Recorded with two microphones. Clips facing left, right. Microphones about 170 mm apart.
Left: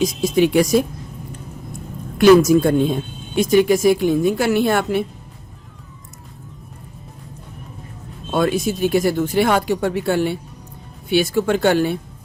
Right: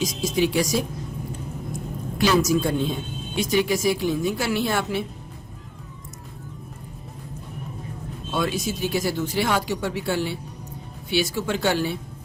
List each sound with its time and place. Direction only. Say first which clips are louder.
0.0 s speech: left 6 dB; 55° left (ahead or behind)
2.1 s speech: left 10 dB; 55° left (ahead or behind)
8.3 s speech: left 7 dB; 55° left (ahead or behind)